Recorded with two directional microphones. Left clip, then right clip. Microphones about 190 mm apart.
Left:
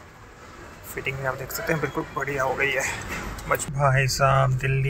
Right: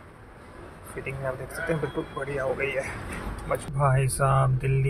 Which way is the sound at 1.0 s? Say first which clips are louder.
Left 4 dB; 5° left (ahead or behind).